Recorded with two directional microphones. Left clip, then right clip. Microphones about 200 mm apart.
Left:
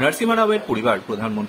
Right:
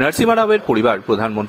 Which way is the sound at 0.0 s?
40° right (ahead or behind).